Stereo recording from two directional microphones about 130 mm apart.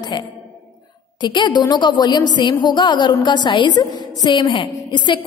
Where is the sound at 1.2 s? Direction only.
35° left (ahead or behind).